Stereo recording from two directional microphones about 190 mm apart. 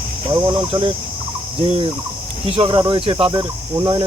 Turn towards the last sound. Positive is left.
turn(degrees=-25)  # may be behind; listen again after turning